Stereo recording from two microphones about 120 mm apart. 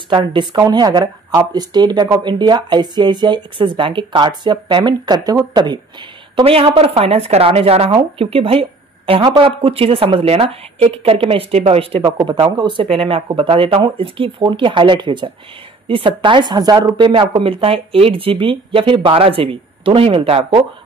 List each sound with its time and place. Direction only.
0.1 s speech: 40° right (ahead or behind)
6.3 s speech: 50° right (ahead or behind)